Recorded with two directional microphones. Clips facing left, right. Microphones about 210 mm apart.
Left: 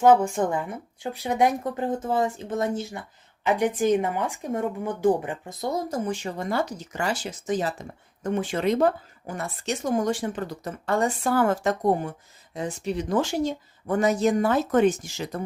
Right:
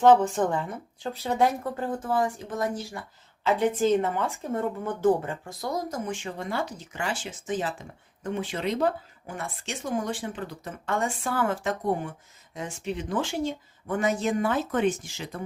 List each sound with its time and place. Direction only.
0.0 s speech: 10° left (ahead or behind); by 15.4 s 40° left (ahead or behind)